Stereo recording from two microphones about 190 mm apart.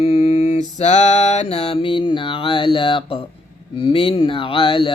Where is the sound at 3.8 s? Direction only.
30° left (ahead or behind).